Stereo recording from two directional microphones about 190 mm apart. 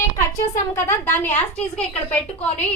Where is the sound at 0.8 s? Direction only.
10° left (ahead or behind).